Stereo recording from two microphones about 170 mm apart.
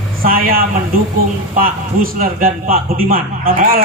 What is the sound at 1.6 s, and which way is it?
A man's voice, 55° right (ahead or behind).